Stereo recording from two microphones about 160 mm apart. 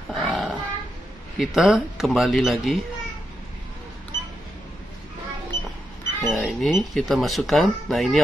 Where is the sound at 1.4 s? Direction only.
Centre (ahead or behind).